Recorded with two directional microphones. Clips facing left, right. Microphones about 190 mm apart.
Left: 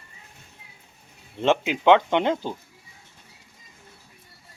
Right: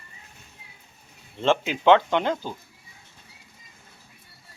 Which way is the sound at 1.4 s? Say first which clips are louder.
Left 1 dB; 15° left (ahead or behind).